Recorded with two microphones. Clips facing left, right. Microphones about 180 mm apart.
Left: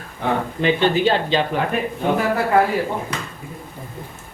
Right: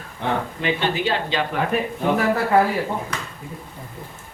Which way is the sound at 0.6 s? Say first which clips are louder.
Left 7 dB; 30° left (ahead or behind).